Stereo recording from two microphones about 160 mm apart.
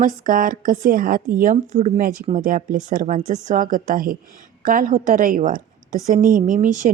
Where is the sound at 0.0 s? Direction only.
60° right (ahead or behind).